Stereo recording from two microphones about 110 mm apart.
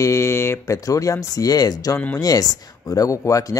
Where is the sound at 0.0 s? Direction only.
25° left (ahead or behind).